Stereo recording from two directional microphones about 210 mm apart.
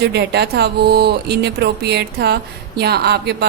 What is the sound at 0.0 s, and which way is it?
A woman's voice, 50° right (ahead or behind).